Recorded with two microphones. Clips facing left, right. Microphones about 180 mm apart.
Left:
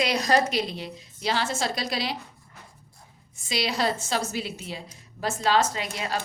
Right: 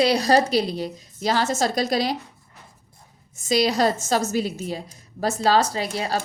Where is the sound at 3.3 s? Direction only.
45° right (ahead or behind).